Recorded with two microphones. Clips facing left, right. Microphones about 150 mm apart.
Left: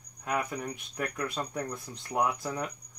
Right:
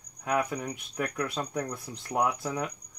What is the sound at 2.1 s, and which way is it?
Speech, 5° right (ahead or behind).